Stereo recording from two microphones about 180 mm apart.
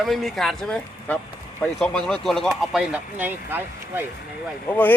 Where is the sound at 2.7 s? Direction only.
10° right (ahead or behind).